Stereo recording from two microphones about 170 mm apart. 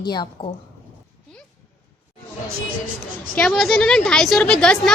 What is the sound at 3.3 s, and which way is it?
A woman's voice, 5° left (ahead or behind).